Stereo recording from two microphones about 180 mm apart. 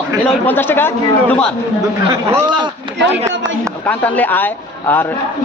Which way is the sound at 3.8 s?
10° left (ahead or behind).